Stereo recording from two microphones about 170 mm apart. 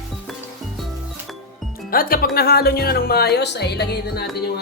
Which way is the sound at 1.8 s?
60° left (ahead or behind).